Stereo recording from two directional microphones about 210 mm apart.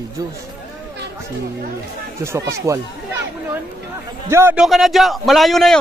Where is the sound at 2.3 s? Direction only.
15° right (ahead or behind).